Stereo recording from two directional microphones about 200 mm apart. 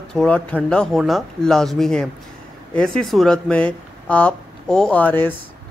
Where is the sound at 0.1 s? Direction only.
5° left (ahead or behind).